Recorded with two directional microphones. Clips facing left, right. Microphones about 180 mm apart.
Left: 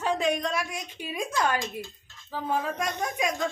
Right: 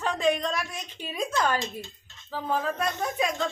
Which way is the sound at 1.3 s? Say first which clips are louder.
Even; 25° right (ahead or behind).